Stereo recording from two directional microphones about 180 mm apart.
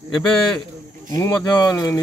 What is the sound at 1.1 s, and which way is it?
Speech, 20° left (ahead or behind).